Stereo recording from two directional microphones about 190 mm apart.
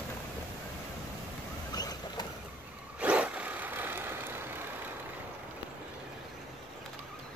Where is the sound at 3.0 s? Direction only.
5° right (ahead or behind).